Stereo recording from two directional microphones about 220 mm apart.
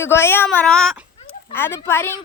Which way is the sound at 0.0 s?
10° left (ahead or behind).